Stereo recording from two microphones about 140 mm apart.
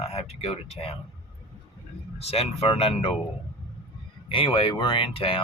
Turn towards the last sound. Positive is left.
turn(degrees=40)  # may be behind; listen again after turning